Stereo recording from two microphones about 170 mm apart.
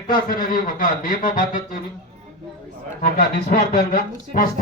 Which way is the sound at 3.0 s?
55° left (ahead or behind).